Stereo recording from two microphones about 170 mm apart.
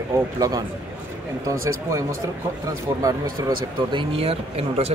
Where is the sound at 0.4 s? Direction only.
20° right (ahead or behind).